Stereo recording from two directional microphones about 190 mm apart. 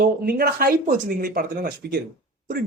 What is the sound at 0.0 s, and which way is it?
Speech, 50° right (ahead or behind).